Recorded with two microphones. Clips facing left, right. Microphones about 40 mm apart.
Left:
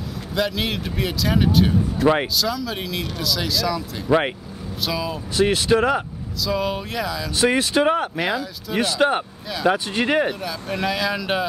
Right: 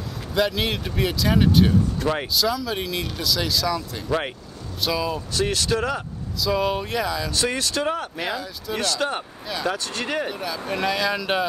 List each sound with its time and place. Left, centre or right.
0.3 s speech: centre
4.1 s speech: left
4.8 s speech: centre
5.3 s speech: centre
6.4 s speech: centre
7.4 s speech: centre
8.2 s speech: centre; by 10.3 s left
10.4 s speech: centre